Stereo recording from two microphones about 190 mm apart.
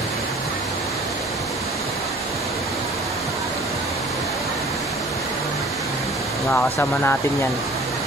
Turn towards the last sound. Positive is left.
turn(degrees=10)  # may be behind; listen again after turning